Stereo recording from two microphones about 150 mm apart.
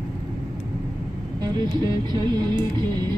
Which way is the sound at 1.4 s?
30° right (ahead or behind).